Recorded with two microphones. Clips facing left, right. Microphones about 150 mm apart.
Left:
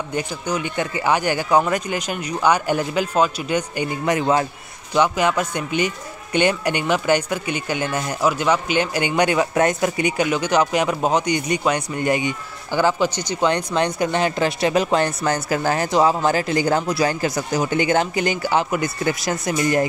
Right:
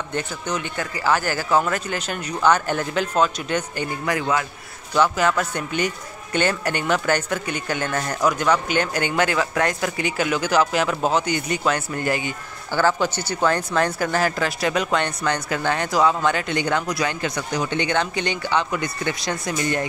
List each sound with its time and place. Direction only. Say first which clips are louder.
0.1 s speech: left 2 dB; 10° left (ahead or behind); by 4.5 s 30° left (ahead or behind)
4.9 s speech: left 1 dB; 15° left (ahead or behind)
10.3 s speech: right 1 dB; 5° right (ahead or behind)
10.9 s speech: left 2 dB; 10° left (ahead or behind); by 18.7 s 40° left (ahead or behind)
19.2 s speech: left 3 dB; centre (ahead or behind)
19.6 s speech: left 6 dB; 30° left (ahead or behind)